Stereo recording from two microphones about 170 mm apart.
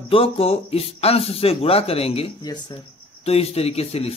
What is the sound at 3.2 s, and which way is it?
Speech, 35° left (ahead or behind).